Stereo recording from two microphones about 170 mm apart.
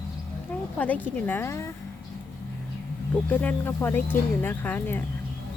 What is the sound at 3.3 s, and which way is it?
Speech, 10° left (ahead or behind).